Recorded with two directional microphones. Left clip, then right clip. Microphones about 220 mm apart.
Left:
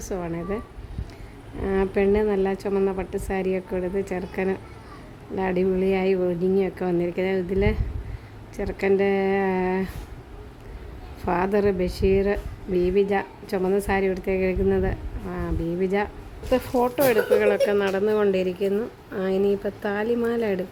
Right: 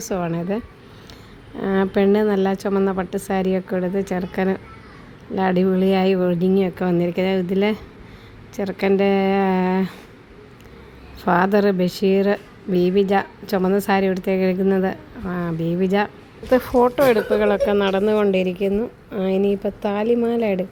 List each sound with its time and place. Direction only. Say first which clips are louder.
0.0 s a woman's voice: right 5 dB; 15° right (ahead or behind)
11.3 s a woman's voice: right 5 dB; 15° right (ahead or behind)